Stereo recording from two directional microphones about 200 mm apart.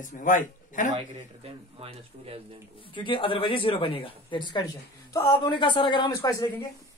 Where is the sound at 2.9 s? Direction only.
25° left (ahead or behind).